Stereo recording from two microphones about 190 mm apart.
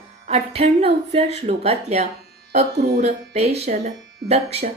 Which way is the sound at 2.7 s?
60° right (ahead or behind).